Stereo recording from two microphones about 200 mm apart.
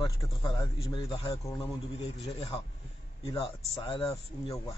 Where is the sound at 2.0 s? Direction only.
30° left (ahead or behind).